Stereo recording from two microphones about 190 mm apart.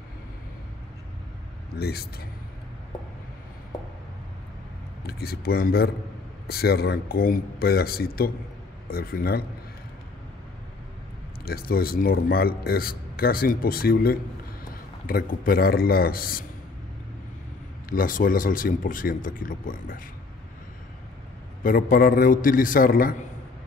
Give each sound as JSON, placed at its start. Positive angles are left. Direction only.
{"t": 1.8, "sound": "a man's voice", "side_deg": 55}
{"t": 5.0, "sound": "speech", "side_deg": 55}
{"t": 11.4, "sound": "a man's voice", "side_deg": 50}
{"t": 17.8, "sound": "speech", "side_deg": 45}
{"t": 21.6, "sound": "speech", "side_deg": 50}